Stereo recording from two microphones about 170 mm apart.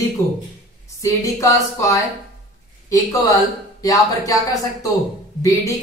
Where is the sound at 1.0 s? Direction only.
20° left (ahead or behind).